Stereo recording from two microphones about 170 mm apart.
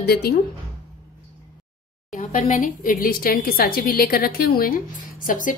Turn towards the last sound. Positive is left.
turn(degrees=50)  # may be behind; listen again after turning